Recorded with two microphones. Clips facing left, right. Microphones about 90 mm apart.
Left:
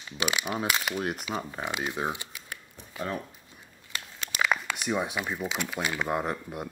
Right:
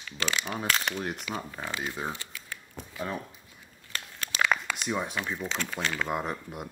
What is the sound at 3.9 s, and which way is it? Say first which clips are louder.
Crumpling: even; 10° left (ahead or behind).